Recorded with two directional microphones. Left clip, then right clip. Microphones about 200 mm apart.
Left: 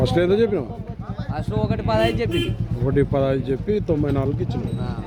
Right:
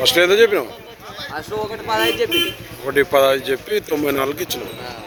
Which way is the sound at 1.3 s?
15° left (ahead or behind).